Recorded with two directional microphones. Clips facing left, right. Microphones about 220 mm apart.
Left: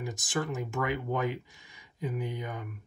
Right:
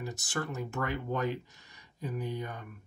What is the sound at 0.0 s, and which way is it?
Speech, 15° left (ahead or behind).